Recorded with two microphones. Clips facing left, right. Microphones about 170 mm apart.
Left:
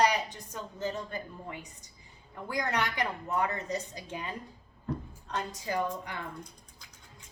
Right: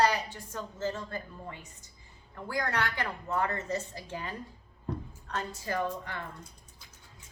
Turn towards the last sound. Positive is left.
turn(degrees=15)  # may be behind; listen again after turning